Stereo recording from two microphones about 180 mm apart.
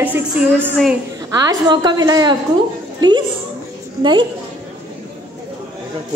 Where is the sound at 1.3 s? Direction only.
20° right (ahead or behind).